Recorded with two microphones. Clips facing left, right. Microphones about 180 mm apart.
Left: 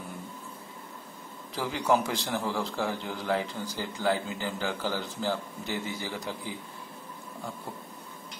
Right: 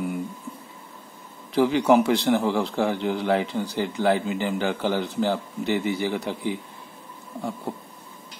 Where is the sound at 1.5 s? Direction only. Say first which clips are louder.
Right 9 dB; 65° right (ahead or behind).